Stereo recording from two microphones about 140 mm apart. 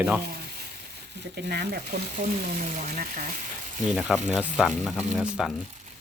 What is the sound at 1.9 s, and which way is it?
Speech, 90° right.